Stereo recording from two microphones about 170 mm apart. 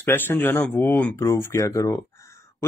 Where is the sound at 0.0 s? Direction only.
10° left (ahead or behind).